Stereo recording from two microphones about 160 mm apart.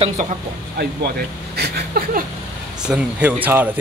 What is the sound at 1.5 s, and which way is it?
Speech, 90° right.